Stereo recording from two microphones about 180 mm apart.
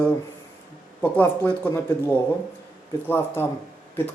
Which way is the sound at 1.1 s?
10° left (ahead or behind).